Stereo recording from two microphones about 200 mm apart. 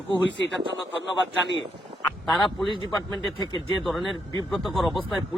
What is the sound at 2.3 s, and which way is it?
Speech, 20° left (ahead or behind).